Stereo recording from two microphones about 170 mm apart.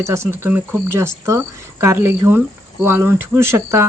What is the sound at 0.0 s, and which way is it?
Speech, 15° right (ahead or behind).